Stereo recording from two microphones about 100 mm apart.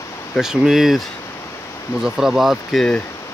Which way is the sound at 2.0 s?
5° right (ahead or behind).